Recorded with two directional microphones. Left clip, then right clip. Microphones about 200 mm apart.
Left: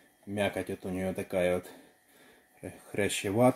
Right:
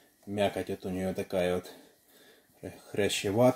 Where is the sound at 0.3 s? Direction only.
15° left (ahead or behind).